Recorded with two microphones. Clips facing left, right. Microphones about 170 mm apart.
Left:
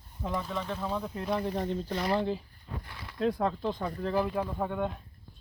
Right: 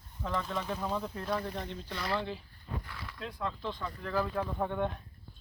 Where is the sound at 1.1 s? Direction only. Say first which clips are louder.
Left 3 dB; 20° left (ahead or behind).